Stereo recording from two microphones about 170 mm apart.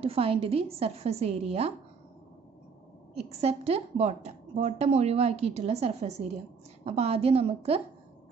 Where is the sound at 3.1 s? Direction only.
40° right (ahead or behind).